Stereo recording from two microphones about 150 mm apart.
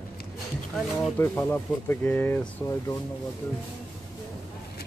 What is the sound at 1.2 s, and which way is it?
Speech, 15° left (ahead or behind).